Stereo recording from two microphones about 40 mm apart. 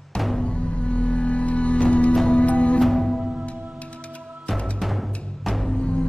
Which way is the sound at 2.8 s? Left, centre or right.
Centre.